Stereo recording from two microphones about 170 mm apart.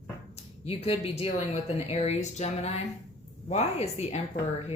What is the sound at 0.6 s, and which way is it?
Speech, 35° left (ahead or behind).